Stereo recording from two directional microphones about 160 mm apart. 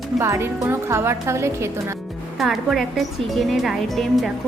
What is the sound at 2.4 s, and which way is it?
A woman's voice, centre (ahead or behind).